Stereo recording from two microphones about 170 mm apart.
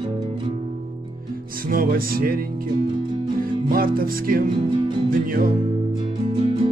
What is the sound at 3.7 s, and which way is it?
Music, 60° right (ahead or behind).